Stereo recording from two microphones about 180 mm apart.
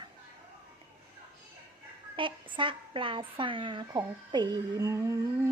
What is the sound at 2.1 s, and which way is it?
A woman's voice, 30° right (ahead or behind).